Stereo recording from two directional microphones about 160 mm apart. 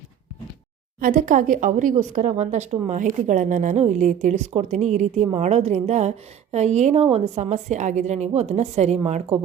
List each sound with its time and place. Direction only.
0.9 s a woman's voice: 55° right (ahead or behind)